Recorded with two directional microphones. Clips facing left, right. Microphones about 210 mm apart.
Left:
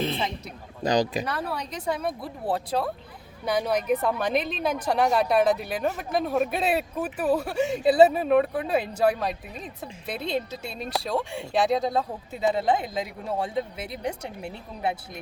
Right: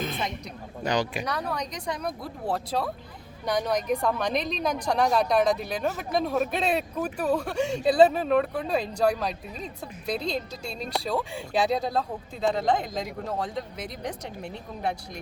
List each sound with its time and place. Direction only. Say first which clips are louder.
0.0 s a sound: left 3 dB; 30° left (ahead or behind)
0.9 s speech: left 4 dB; 35° left (ahead or behind)
1.2 s a woman's voice: even; 5° left (ahead or behind)